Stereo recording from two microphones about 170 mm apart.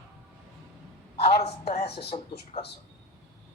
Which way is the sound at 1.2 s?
35° left (ahead or behind).